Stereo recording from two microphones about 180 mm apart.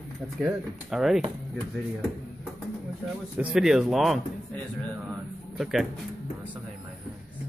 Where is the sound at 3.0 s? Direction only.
5° right (ahead or behind).